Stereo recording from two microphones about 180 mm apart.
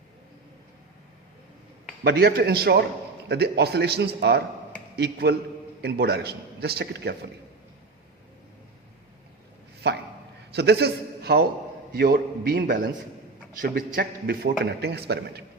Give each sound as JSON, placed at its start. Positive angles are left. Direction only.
{"t": 2.0, "sound": "a man's voice", "side_deg": -60}
{"t": 9.8, "sound": "a man's voice", "side_deg": -65}
{"t": 14.6, "sound": "a man's voice", "side_deg": -65}